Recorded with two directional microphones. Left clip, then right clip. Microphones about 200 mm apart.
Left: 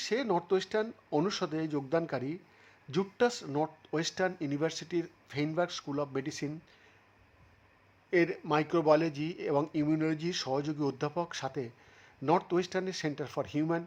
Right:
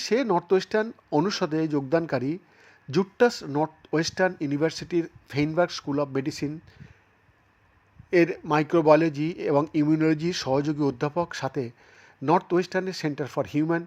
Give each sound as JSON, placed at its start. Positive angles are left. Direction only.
{"t": 0.0, "sound": "speech", "side_deg": -20}
{"t": 8.1, "sound": "speech", "side_deg": -20}